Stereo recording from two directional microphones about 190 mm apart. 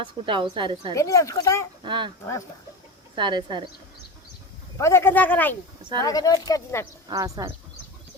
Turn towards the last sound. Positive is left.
turn(degrees=-20)  # may be behind; listen again after turning